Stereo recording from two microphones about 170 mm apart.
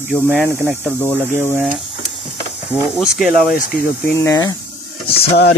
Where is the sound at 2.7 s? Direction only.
5° right (ahead or behind).